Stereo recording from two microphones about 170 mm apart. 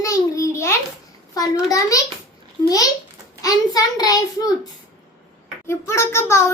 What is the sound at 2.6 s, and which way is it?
A child's voice, 20° left (ahead or behind).